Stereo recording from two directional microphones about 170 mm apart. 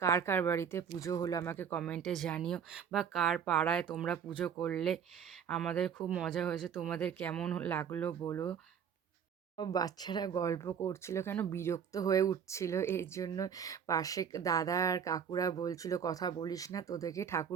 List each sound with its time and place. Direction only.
0.0 s speech: 15° left (ahead or behind)
9.6 s speech: 25° left (ahead or behind)